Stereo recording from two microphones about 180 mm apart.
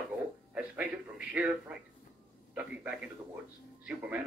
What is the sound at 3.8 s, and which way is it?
Speech, 5° right (ahead or behind).